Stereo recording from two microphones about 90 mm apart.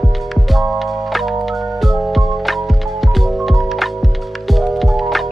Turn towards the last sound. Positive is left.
turn(degrees=0)  # may be behind; listen again after turning